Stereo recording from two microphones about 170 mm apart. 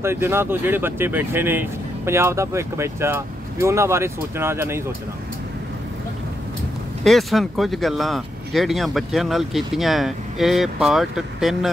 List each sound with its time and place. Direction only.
0.0 s speech: 15° right (ahead or behind)
7.1 s speech: centre (ahead or behind)